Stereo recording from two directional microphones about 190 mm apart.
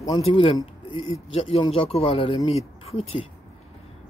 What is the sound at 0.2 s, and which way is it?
Speech, 30° left (ahead or behind).